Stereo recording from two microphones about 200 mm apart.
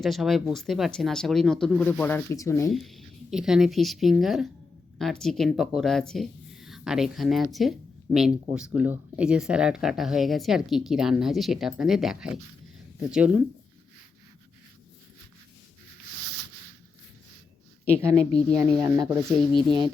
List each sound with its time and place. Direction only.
0.0 s speech: centre (ahead or behind)
2.7 s a woman's voice: centre (ahead or behind)
17.8 s a woman's voice: 15° right (ahead or behind)
19.3 s speech: centre (ahead or behind)